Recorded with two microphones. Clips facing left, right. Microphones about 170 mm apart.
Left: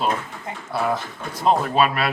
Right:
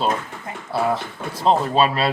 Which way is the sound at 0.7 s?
30° right (ahead or behind).